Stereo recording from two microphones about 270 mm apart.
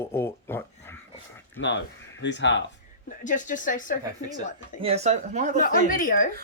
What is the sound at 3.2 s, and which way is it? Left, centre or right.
Speech, left.